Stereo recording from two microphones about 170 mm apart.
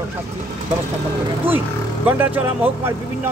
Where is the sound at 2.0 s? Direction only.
10° right (ahead or behind).